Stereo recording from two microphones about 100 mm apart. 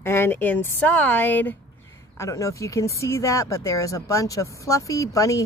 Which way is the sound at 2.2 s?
30° left (ahead or behind).